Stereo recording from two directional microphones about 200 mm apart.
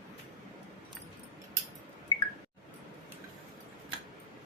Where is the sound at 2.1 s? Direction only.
25° left (ahead or behind).